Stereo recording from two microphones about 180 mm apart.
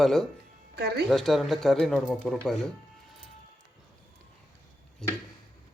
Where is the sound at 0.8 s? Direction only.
60° right (ahead or behind).